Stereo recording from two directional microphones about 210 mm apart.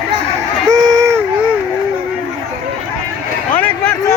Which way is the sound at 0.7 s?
20° right (ahead or behind).